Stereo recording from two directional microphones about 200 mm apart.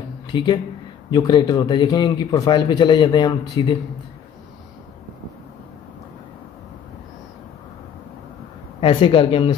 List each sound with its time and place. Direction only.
0.3 s speech: 25° left (ahead or behind)
8.8 s speech: 25° left (ahead or behind)